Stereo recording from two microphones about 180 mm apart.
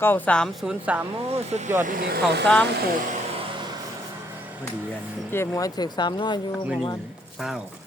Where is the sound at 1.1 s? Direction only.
35° right (ahead or behind).